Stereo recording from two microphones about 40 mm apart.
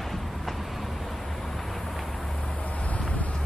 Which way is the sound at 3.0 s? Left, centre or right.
Left.